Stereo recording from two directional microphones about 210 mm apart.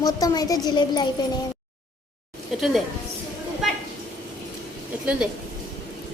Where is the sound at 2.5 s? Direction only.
Centre (ahead or behind).